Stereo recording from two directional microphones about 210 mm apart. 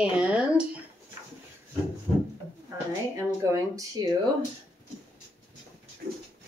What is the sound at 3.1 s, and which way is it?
Speech, 15° right (ahead or behind).